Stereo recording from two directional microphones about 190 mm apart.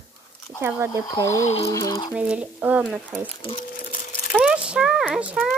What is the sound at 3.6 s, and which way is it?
Crumpling, 50° left (ahead or behind).